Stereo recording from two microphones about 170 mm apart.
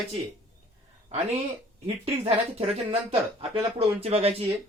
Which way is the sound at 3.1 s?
35° right (ahead or behind).